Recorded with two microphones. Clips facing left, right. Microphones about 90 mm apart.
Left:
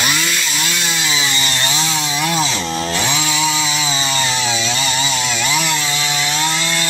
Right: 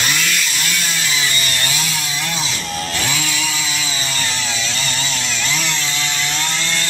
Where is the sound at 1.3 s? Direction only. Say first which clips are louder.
Left 2 dB; 25° left (ahead or behind).